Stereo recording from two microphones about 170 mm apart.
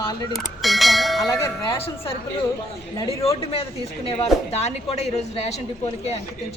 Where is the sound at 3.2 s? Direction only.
35° left (ahead or behind).